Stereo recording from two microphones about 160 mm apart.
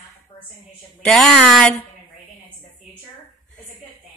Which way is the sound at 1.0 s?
Centre (ahead or behind).